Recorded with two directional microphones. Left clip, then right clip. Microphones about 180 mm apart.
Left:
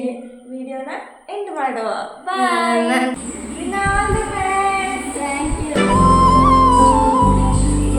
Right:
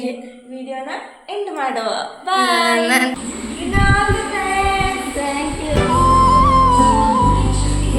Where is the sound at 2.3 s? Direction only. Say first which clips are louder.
Right 2 dB; 15° right (ahead or behind).